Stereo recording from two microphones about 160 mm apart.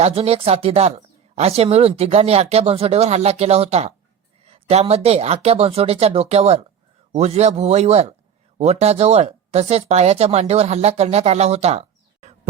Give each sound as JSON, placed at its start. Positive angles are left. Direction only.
{"t": 0.0, "sound": "speech", "side_deg": -40}